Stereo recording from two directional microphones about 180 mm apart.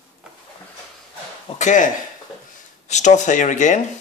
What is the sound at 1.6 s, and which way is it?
Speech, 45° left (ahead or behind).